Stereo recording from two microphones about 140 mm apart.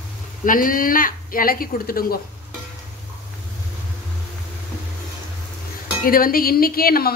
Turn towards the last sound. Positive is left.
turn(degrees=90)